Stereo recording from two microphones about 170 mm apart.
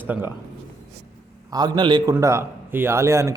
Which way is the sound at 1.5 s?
25° right (ahead or behind).